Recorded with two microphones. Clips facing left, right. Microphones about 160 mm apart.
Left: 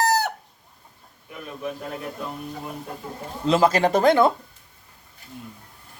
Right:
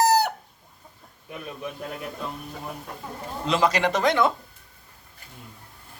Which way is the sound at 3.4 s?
35° left (ahead or behind).